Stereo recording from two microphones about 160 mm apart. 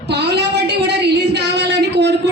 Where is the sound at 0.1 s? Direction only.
90° right.